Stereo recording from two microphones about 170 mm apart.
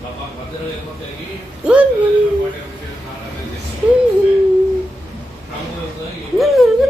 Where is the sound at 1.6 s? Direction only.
5° right (ahead or behind).